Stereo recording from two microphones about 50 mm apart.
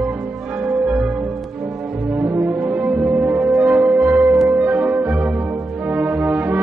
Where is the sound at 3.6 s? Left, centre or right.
Right.